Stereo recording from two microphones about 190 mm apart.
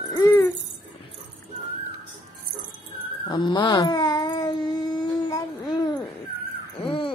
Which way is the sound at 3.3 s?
25° left (ahead or behind).